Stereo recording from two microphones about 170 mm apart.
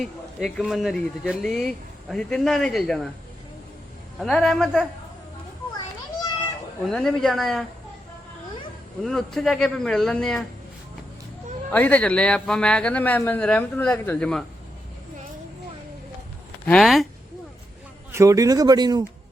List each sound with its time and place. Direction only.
0.0 s speech: centre (ahead or behind)
4.2 s speech: centre (ahead or behind)
6.8 s speech: centre (ahead or behind)
9.0 s speech: 5° left (ahead or behind)
11.7 s a man's voice: 10° left (ahead or behind)
16.6 s speech: centre (ahead or behind)
18.1 s speech: 20° right (ahead or behind)